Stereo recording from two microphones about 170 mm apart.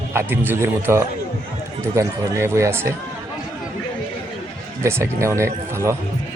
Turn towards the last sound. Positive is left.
turn(degrees=-15)  # may be behind; listen again after turning